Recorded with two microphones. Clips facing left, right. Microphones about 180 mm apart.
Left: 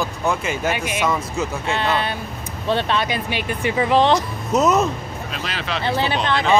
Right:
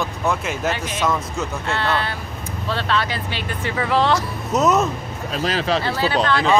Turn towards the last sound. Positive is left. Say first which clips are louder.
# right 2 dB
turn(degrees=20)  # may be behind; listen again after turning